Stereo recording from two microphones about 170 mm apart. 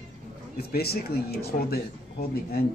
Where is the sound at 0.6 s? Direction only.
65° left (ahead or behind).